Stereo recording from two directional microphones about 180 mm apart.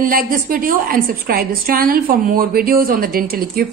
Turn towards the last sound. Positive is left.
turn(degrees=-55)  # may be behind; listen again after turning